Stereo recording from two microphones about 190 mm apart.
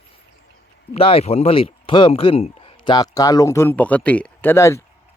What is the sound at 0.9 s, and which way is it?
Speech, 30° left (ahead or behind).